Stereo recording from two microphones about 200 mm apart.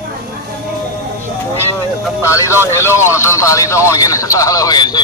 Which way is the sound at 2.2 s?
15° left (ahead or behind).